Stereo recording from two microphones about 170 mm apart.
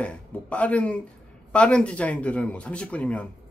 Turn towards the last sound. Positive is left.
turn(degrees=5)  # may be behind; listen again after turning